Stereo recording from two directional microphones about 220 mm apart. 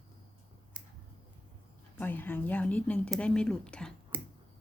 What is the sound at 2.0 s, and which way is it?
A woman's voice, 10° left (ahead or behind).